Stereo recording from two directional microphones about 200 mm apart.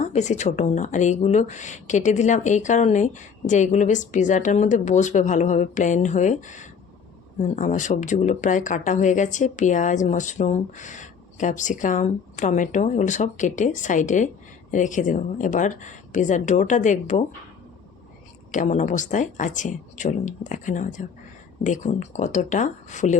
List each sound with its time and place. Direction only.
0.1 s speech: 35° left (ahead or behind)
18.5 s speech: 35° left (ahead or behind)